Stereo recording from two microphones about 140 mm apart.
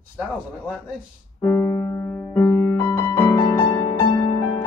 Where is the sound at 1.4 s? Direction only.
15° left (ahead or behind).